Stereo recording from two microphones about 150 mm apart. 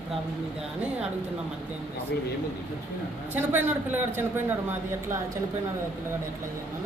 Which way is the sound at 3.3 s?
10° right (ahead or behind).